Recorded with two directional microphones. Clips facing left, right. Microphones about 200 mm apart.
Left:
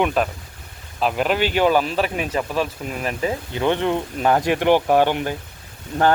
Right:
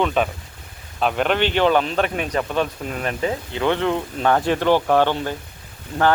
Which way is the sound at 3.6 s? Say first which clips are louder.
Even; 15° left (ahead or behind).